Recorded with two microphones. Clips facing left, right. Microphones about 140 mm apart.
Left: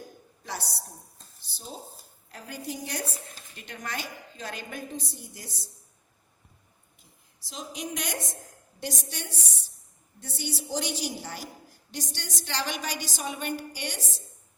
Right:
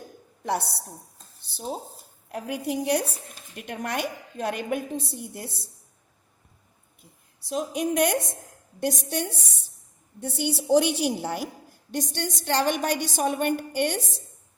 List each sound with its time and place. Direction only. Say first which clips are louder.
0.4 s speech: right 10 dB; 60° right (ahead or behind)
7.4 s a woman's voice: right 11 dB; 55° right (ahead or behind)
10.3 s a woman's voice: right 12 dB; 60° right (ahead or behind)